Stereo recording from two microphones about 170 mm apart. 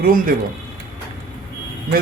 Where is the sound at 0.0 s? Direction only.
60° right (ahead or behind).